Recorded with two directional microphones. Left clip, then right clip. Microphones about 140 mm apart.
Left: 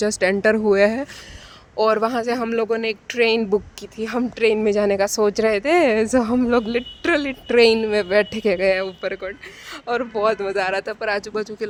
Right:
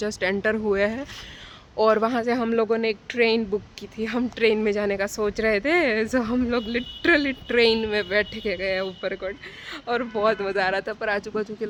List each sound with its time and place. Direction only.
0.0 s speech: 40° left (ahead or behind)
4.2 s speech: 25° left (ahead or behind)
4.8 s speech: 45° left (ahead or behind)
8.3 s speech: 55° left (ahead or behind)
9.8 s speech: 35° left (ahead or behind)